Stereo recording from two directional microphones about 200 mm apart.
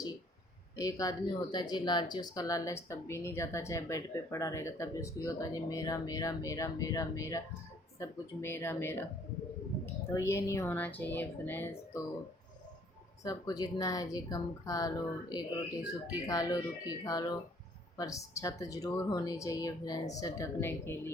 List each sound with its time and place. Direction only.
0.8 s speech: 15° left (ahead or behind)
13.2 s speech: 20° left (ahead or behind)